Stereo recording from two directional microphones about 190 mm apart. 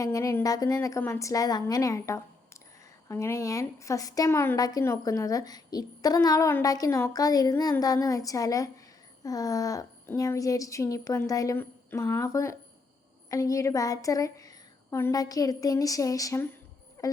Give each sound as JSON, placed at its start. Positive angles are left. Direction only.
{"t": 0.0, "sound": "a woman's voice", "side_deg": 15}
{"t": 17.0, "sound": "music", "side_deg": 15}